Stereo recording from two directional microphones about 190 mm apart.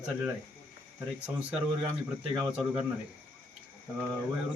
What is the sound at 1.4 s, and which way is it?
Speech, 5° right (ahead or behind).